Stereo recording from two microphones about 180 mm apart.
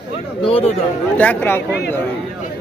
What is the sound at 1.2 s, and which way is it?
Speech, 10° left (ahead or behind).